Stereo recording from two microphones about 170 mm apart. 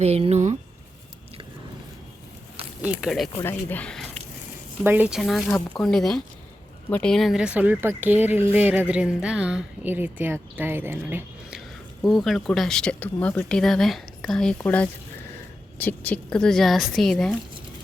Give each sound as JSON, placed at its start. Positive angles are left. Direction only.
{"t": 0.0, "sound": "speech", "side_deg": -40}
{"t": 2.8, "sound": "speech", "side_deg": -5}
{"t": 3.3, "sound": "speech", "side_deg": 10}
{"t": 4.8, "sound": "speech", "side_deg": -10}
{"t": 12.0, "sound": "speech", "side_deg": 0}